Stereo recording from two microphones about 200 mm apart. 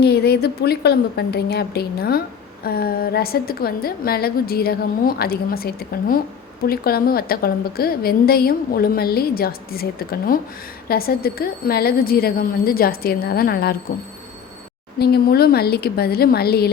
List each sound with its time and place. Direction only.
0.0 s a woman's voice: 55° left (ahead or behind)
14.9 s a woman's voice: 55° left (ahead or behind)